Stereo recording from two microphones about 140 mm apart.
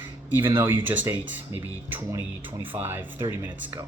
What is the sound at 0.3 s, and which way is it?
Speech, 15° right (ahead or behind).